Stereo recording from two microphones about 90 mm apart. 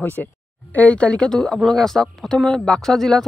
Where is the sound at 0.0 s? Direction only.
20° left (ahead or behind).